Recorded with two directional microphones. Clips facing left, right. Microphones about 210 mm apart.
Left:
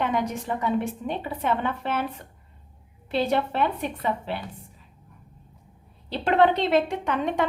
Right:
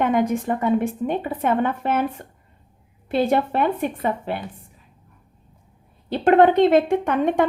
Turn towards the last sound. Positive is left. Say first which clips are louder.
# right 6 dB
turn(degrees=-50)  # may be behind; listen again after turning